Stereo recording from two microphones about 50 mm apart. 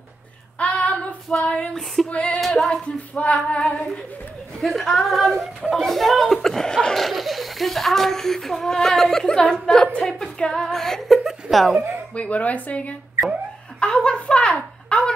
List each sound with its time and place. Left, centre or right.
0.6 s female singing: left
1.7 s speech: centre
2.0 s speech: left
2.4 s speech: centre
2.7 s speech: left
4.6 s speech: centre
7.1 s speech: centre
12.2 s speech: left
13.7 s a sound: centre